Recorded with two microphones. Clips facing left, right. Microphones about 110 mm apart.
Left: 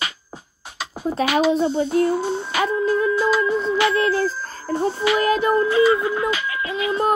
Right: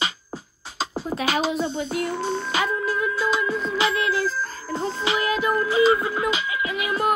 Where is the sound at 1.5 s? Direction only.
30° left (ahead or behind).